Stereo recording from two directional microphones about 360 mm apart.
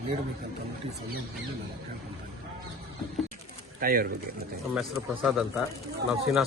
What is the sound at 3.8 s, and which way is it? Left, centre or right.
Speech, right.